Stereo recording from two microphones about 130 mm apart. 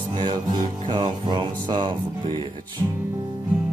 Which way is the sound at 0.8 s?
35° right (ahead or behind).